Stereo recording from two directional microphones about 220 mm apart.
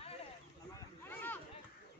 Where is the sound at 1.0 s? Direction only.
10° left (ahead or behind).